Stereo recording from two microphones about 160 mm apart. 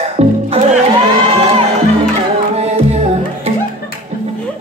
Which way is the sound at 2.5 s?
40° right (ahead or behind).